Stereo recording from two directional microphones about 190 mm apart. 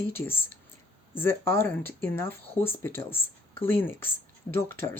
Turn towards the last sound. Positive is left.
turn(degrees=10)  # may be behind; listen again after turning